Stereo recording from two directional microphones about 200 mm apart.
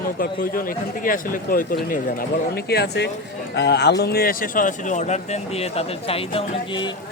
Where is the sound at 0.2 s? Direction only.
45° left (ahead or behind); by 6.9 s 25° left (ahead or behind).